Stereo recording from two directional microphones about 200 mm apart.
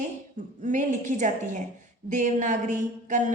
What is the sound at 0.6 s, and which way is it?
A woman's voice, 40° right (ahead or behind).